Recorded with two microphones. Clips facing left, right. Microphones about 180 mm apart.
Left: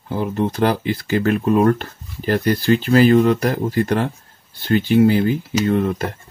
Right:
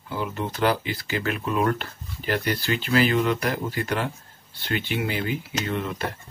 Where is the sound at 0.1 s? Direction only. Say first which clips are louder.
Left 8 dB; 40° left (ahead or behind).